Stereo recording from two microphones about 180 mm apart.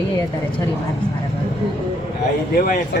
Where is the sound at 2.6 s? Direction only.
55° left (ahead or behind).